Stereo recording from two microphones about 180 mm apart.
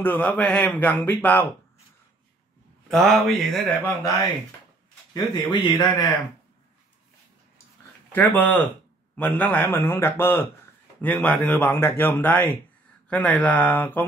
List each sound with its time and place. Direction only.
0.0 s a man's voice: 10° left (ahead or behind)
2.9 s speech: centre (ahead or behind)
5.1 s speech: 20° left (ahead or behind)
8.1 s a man's voice: 10° left (ahead or behind)